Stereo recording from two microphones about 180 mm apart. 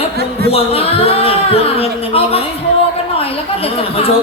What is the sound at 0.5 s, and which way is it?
Speech, 30° left (ahead or behind).